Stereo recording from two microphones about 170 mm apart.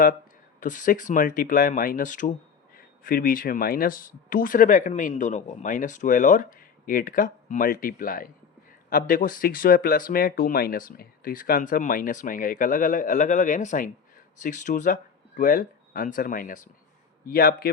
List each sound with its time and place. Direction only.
0.6 s speech: 50° left (ahead or behind)